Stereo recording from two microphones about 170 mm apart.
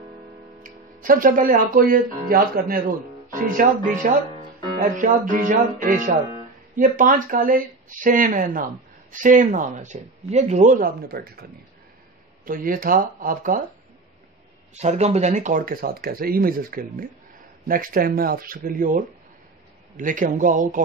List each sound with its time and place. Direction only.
0.6 s speech: 55° right (ahead or behind)
12.4 s speech: 55° right (ahead or behind)
14.7 s speech: 40° right (ahead or behind)